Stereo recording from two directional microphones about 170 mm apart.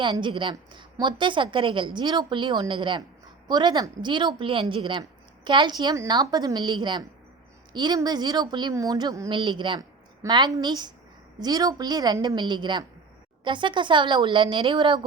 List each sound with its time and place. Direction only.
0.0 s a woman's voice: 30° right (ahead or behind)